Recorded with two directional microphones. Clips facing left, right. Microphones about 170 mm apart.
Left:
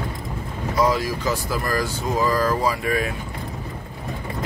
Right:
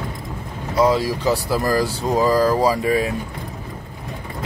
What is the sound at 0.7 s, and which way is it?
Speech, 30° right (ahead or behind).